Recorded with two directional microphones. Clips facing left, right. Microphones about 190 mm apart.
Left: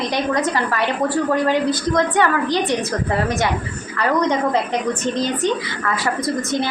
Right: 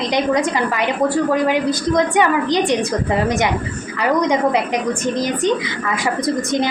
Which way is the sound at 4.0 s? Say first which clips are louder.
Right 2 dB; 15° right (ahead or behind).